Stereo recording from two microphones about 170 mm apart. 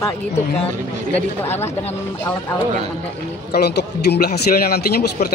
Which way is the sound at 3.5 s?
75° left (ahead or behind).